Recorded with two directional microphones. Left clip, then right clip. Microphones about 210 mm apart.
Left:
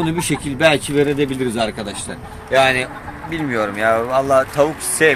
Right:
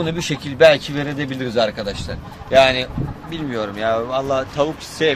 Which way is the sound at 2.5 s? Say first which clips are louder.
Right 1 dB; 50° right (ahead or behind).